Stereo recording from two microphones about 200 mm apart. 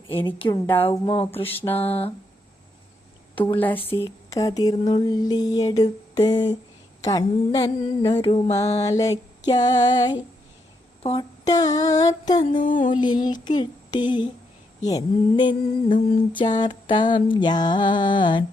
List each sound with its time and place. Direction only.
0.9 s music: 25° left (ahead or behind)
1.4 s speech: 10° left (ahead or behind)
1.9 s music: 30° left (ahead or behind)
3.3 s speech: 10° left (ahead or behind)
4.9 s music: 20° left (ahead or behind)
8.8 s speech: 15° left (ahead or behind)
9.5 s music: 20° left (ahead or behind)
12.4 s music: 40° left (ahead or behind)
13.0 s music: 20° left (ahead or behind)
16.0 s music: 35° left (ahead or behind)
16.4 s music: 25° left (ahead or behind)